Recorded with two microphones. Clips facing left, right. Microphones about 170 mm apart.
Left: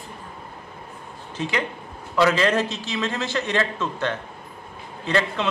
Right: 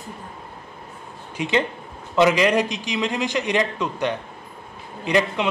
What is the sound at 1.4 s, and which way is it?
A man's voice, 25° right (ahead or behind).